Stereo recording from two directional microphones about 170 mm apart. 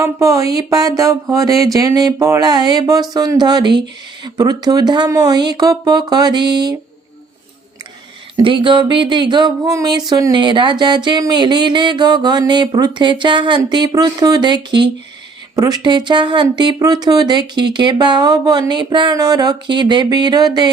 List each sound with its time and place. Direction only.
0.0 s speech: 20° right (ahead or behind)
8.4 s speech: 30° right (ahead or behind)